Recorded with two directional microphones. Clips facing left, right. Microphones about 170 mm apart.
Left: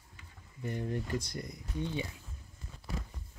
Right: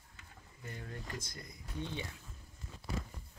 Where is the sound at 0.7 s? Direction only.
20° left (ahead or behind).